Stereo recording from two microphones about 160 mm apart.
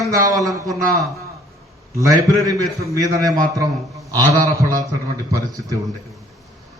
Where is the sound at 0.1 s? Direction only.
20° right (ahead or behind).